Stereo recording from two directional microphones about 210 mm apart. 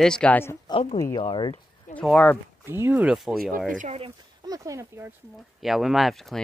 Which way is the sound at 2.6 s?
10° right (ahead or behind).